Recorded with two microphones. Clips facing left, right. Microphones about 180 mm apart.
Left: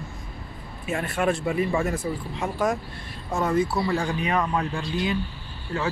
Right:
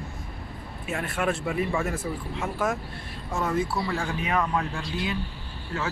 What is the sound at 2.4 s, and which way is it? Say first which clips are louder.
Speech: left 3 dB; 15° left (ahead or behind).